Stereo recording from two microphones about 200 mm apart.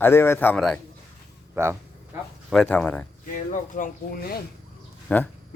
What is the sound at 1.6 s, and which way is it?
Speech, 10° right (ahead or behind).